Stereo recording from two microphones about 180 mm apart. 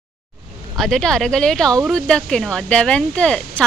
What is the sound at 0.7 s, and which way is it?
Speech, centre (ahead or behind).